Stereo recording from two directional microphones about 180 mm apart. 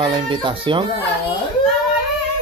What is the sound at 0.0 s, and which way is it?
Speech, 25° right (ahead or behind).